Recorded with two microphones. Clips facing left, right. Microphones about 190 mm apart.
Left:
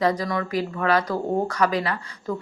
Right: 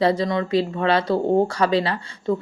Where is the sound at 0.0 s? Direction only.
30° right (ahead or behind).